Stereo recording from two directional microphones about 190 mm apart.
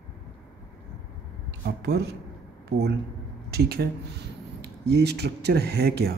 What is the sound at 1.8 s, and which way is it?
Speech, 60° right (ahead or behind).